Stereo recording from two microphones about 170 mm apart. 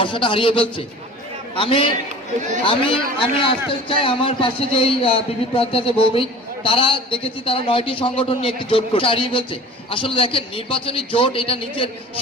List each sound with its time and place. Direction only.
0.0 s a man's voice: 30° left (ahead or behind)